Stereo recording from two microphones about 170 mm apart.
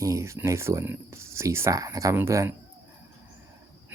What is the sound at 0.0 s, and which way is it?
Speech, 20° right (ahead or behind).